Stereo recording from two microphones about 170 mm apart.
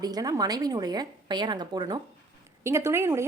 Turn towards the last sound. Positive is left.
turn(degrees=-15)  # may be behind; listen again after turning